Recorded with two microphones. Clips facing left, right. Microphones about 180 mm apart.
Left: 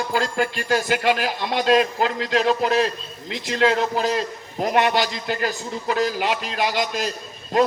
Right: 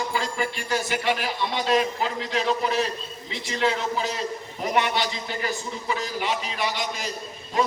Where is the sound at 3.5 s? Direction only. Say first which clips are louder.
Left 5 dB; 80° left.